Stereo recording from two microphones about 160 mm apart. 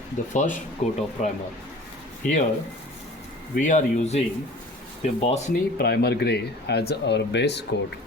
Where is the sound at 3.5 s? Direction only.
50° left (ahead or behind).